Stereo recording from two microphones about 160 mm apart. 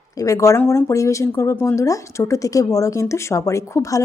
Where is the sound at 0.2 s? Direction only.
20° left (ahead or behind).